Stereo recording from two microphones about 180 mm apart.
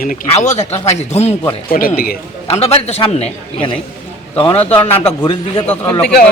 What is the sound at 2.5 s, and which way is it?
A man's voice, 35° left (ahead or behind).